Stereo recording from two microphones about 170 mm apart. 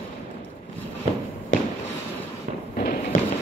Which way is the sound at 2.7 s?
55° left (ahead or behind).